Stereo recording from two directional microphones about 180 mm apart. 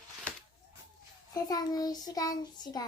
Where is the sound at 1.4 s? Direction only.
20° left (ahead or behind).